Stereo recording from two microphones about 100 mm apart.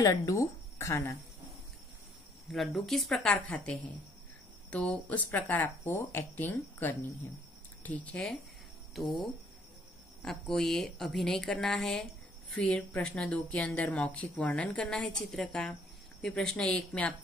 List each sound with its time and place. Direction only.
0.0 s speech: 35° left (ahead or behind)
2.5 s a woman's voice: centre (ahead or behind)
10.2 s a woman's voice: 5° left (ahead or behind)